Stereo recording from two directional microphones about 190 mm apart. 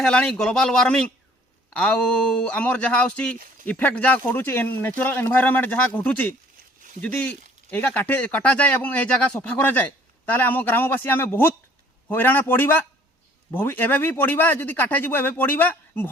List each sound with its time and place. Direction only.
0.0 s speech: 5° left (ahead or behind)
7.7 s speech: 10° left (ahead or behind)